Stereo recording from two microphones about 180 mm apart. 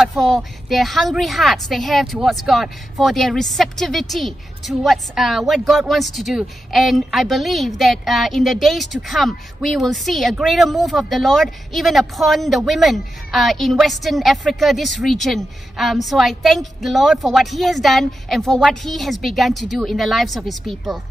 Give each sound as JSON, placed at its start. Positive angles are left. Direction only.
{"t": 0.0, "sound": "a woman's voice", "side_deg": 0}